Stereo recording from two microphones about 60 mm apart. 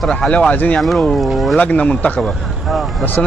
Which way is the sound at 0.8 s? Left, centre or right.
Centre.